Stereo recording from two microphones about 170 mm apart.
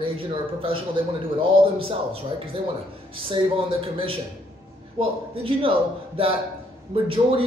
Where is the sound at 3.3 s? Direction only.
30° right (ahead or behind).